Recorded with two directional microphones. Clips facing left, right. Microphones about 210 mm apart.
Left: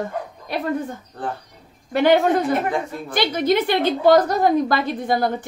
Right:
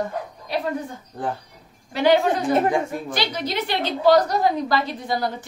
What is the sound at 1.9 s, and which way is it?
A woman's voice, 55° left (ahead or behind).